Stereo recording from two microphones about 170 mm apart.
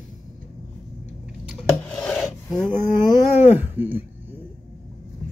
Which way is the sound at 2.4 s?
5° left (ahead or behind).